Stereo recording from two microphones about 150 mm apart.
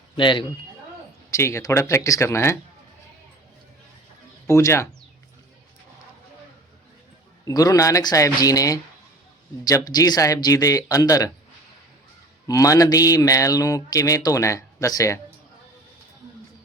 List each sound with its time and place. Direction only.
0.2 s a man's voice: 30° left (ahead or behind)
1.3 s speech: 20° left (ahead or behind)
4.4 s speech: 20° left (ahead or behind)
7.4 s speech: 25° left (ahead or behind)
12.5 s speech: 25° left (ahead or behind)